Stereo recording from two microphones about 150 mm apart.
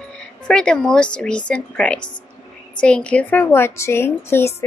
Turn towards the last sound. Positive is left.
turn(degrees=15)  # may be behind; listen again after turning